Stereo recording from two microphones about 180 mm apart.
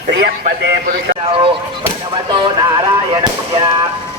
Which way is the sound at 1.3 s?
30° right (ahead or behind).